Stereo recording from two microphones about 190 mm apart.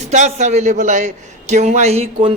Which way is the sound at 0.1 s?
40° right (ahead or behind).